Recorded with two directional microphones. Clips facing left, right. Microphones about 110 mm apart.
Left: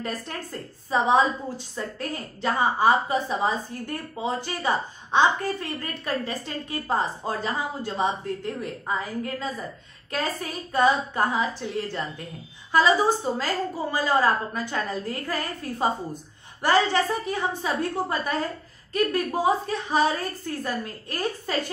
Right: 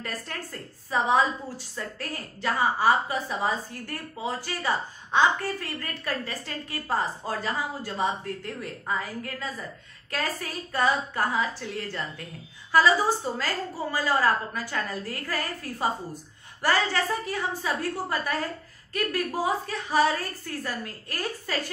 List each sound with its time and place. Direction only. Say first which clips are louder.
0.0 s a woman's voice: left 3 dB; 20° left (ahead or behind)